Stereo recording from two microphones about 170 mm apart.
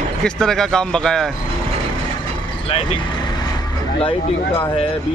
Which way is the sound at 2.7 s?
35° left (ahead or behind).